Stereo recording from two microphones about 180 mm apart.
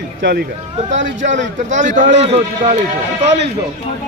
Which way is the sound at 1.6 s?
45° right (ahead or behind).